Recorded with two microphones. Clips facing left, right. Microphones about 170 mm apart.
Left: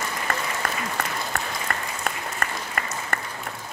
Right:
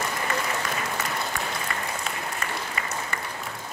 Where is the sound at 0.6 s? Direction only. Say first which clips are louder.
Left 1 dB; 55° left (ahead or behind).